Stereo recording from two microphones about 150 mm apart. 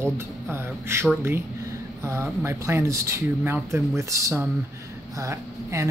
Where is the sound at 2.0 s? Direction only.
20° right (ahead or behind).